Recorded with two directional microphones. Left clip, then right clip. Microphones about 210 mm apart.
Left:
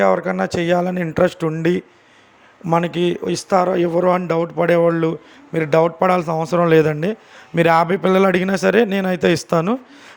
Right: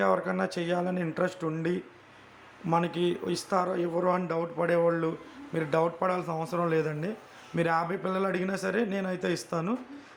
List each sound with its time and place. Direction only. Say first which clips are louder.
0.0 s a man's voice: left 10 dB; 30° left (ahead or behind)